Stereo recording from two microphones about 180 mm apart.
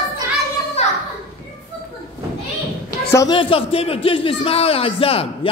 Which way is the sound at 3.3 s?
30° left (ahead or behind).